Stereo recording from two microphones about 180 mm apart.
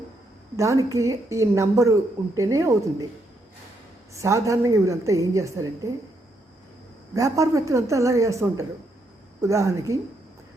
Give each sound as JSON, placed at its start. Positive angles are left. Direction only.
{"t": 0.5, "sound": "a woman's voice", "side_deg": -15}
{"t": 4.1, "sound": "a woman's voice", "side_deg": -15}
{"t": 7.1, "sound": "a woman's voice", "side_deg": -20}